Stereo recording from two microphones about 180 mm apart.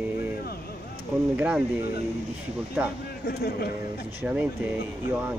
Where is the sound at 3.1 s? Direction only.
60° left (ahead or behind).